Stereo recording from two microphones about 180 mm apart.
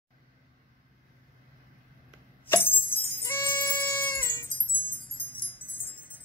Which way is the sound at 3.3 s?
15° left (ahead or behind).